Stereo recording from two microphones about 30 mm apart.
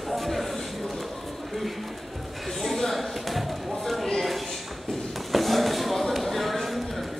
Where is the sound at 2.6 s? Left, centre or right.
Centre.